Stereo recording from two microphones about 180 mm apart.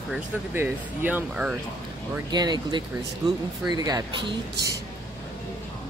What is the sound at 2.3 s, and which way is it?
Speech, 25° right (ahead or behind).